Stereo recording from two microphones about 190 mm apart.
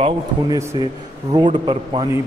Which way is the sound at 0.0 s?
15° right (ahead or behind).